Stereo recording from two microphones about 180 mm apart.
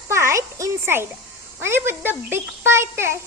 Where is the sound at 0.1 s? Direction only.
15° right (ahead or behind).